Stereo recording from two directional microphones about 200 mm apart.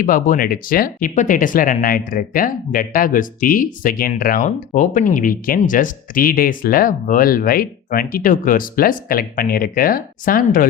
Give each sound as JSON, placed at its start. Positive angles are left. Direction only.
{"t": 0.0, "sound": "speech", "side_deg": 45}